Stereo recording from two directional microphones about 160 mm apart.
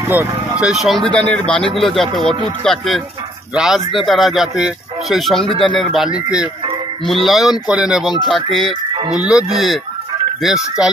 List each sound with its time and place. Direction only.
0.1 s speech: 10° right (ahead or behind)